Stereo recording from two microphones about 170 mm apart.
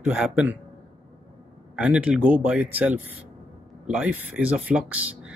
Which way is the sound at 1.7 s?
5° right (ahead or behind).